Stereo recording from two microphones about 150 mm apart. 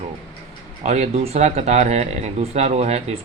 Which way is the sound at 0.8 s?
45° right (ahead or behind).